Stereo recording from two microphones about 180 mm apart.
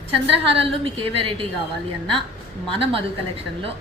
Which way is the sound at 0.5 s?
30° right (ahead or behind).